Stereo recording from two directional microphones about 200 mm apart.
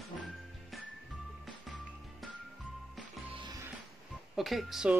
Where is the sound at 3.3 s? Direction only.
20° right (ahead or behind).